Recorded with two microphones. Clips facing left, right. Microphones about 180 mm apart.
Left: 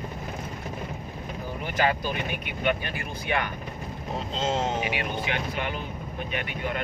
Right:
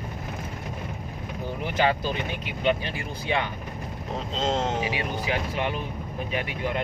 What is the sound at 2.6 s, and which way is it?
Speech, 25° right (ahead or behind).